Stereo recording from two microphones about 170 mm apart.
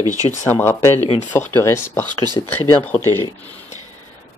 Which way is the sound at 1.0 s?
40° left (ahead or behind).